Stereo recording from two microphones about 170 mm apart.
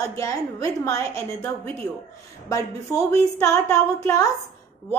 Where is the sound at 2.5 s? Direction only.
20° left (ahead or behind).